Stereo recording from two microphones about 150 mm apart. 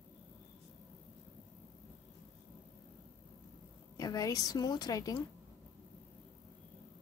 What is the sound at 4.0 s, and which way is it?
A woman's voice, 25° left (ahead or behind).